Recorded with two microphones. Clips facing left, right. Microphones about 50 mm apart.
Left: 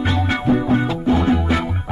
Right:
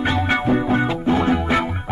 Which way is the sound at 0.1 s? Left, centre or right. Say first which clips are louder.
Left 1 dB; right.